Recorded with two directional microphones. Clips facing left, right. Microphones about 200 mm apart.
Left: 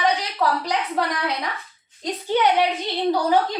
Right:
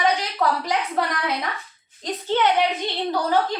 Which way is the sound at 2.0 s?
15° left (ahead or behind).